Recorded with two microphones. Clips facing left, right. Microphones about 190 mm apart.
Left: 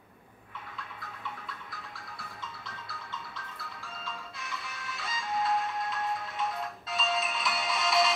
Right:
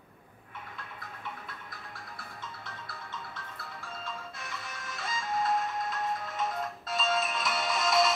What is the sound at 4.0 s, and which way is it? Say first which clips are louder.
Music: even; 50° right (ahead or behind).